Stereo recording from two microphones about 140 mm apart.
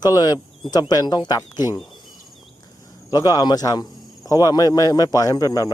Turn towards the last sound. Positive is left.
turn(degrees=25)  # may be behind; listen again after turning